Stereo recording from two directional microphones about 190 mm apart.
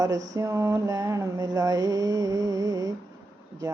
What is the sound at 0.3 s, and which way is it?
Mantra, 15° right (ahead or behind).